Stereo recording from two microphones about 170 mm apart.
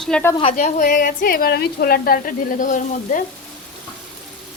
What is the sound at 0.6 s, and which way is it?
A woman's voice, 50° left (ahead or behind).